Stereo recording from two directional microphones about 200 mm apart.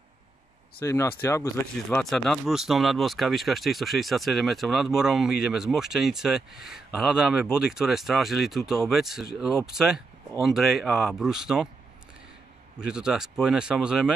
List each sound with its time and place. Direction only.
0.8 s speech: 15° left (ahead or behind); by 11.7 s 5° right (ahead or behind)
12.8 s speech: 5° right (ahead or behind)